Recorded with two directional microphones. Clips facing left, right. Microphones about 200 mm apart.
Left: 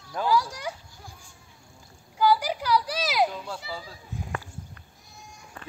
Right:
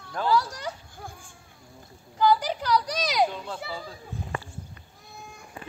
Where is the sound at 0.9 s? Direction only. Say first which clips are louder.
Right 6 dB; 55° right (ahead or behind).